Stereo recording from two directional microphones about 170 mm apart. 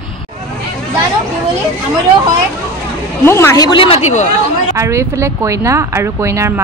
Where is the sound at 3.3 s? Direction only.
15° left (ahead or behind); by 4.3 s 45° left (ahead or behind).